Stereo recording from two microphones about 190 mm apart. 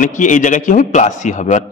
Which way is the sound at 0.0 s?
40° left (ahead or behind).